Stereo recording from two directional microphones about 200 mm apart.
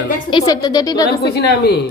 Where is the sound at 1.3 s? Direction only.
55° left (ahead or behind).